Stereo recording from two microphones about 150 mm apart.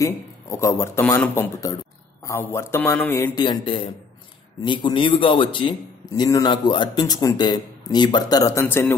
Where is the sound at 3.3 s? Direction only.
30° left (ahead or behind).